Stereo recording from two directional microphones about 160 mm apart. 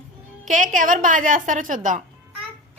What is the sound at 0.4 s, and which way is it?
Speech, 55° right (ahead or behind).